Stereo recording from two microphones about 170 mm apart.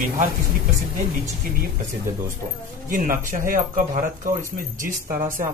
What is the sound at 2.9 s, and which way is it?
Speech, 55° right (ahead or behind).